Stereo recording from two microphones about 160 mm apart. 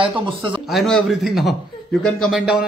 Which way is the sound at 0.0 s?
30° right (ahead or behind).